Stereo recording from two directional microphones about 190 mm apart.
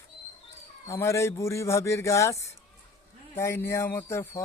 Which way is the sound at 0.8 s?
15° left (ahead or behind).